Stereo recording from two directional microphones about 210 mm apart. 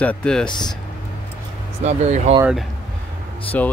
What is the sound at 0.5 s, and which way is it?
Speech, 20° left (ahead or behind).